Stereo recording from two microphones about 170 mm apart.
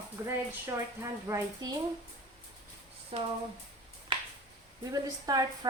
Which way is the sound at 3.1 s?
35° right (ahead or behind).